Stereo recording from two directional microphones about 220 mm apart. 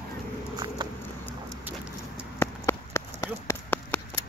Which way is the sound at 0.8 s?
20° right (ahead or behind).